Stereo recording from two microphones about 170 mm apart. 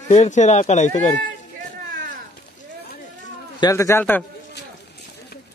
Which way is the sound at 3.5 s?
20° left (ahead or behind).